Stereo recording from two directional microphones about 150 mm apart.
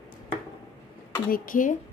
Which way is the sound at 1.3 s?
65° left (ahead or behind).